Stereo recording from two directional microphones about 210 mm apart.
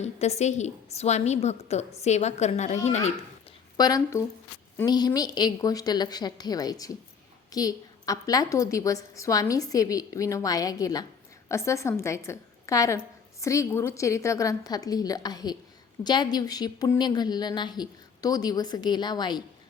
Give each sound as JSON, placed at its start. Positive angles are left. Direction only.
{"t": 0.0, "sound": "a woman's voice", "side_deg": 30}
{"t": 3.8, "sound": "a woman's voice", "side_deg": 15}